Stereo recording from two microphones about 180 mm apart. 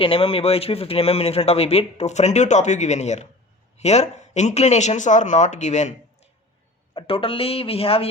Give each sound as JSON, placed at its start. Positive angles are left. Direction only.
{"t": 0.0, "sound": "a man's voice", "side_deg": 30}
{"t": 6.9, "sound": "a man's voice", "side_deg": 30}